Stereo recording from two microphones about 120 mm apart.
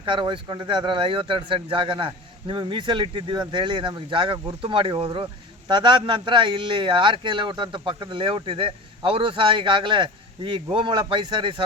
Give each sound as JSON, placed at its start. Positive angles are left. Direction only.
{"t": 0.0, "sound": "speech", "side_deg": -40}